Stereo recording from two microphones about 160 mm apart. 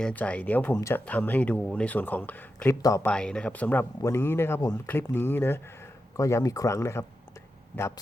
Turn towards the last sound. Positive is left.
turn(degrees=20)  # may be behind; listen again after turning